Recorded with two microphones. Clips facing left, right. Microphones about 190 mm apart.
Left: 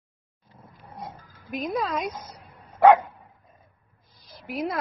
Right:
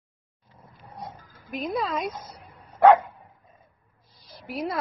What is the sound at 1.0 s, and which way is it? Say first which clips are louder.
Dog: even; centre (ahead or behind).